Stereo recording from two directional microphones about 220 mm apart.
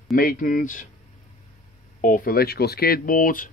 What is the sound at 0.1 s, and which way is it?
Speech, 40° left (ahead or behind).